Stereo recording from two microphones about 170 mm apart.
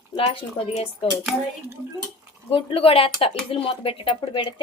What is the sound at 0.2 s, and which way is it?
Speech, 30° left (ahead or behind).